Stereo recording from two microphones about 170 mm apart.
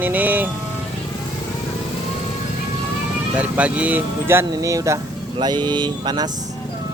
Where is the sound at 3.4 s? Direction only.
10° right (ahead or behind); by 6.3 s 25° right (ahead or behind).